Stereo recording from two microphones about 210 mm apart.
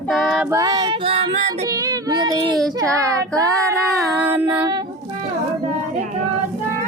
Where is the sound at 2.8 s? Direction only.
15° right (ahead or behind).